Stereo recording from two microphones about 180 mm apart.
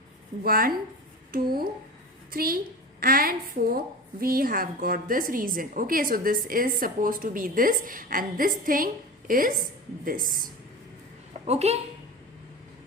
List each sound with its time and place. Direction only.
0.4 s a woman's voice: 55° right (ahead or behind)
11.4 s a woman's voice: 35° right (ahead or behind)